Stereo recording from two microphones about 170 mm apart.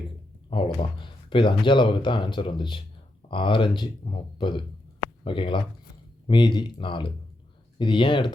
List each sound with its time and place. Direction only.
0.5 s speech: 30° left (ahead or behind)